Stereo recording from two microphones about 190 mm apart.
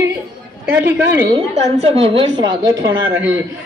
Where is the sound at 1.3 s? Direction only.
30° right (ahead or behind).